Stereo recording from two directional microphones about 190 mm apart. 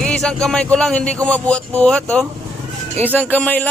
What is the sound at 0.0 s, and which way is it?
A man's voice, 5° left (ahead or behind).